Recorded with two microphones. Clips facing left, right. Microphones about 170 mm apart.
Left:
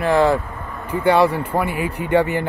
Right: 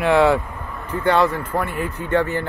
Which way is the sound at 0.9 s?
10° left (ahead or behind).